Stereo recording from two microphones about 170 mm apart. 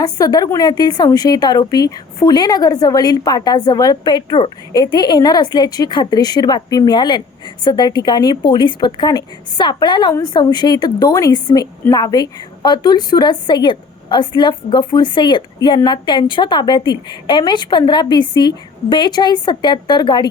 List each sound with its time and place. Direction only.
0.0 s a woman's voice: 20° left (ahead or behind)